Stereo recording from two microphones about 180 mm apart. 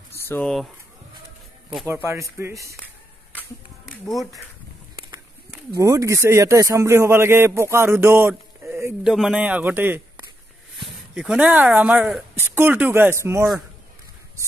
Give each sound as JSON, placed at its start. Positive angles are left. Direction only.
{"t": 0.3, "sound": "speech", "side_deg": 5}
{"t": 2.0, "sound": "a man's voice", "side_deg": -15}
{"t": 3.8, "sound": "music", "side_deg": 0}
{"t": 5.8, "sound": "a man's voice", "side_deg": -20}
{"t": 11.1, "sound": "a man's voice", "side_deg": -5}